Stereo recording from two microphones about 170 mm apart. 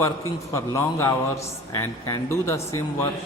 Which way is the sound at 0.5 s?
15° left (ahead or behind).